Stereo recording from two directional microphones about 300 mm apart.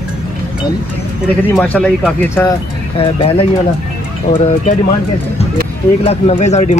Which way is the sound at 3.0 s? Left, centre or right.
Centre.